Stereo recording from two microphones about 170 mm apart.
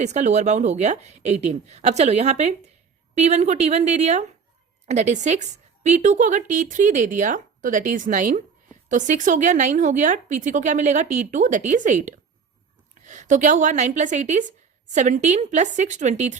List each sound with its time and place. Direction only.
0.0 s a woman's voice: 45° right (ahead or behind)